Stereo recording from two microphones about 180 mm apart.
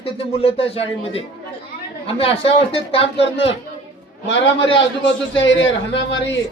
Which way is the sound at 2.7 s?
30° left (ahead or behind).